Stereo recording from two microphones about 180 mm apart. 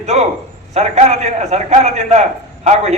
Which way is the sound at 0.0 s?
40° right (ahead or behind).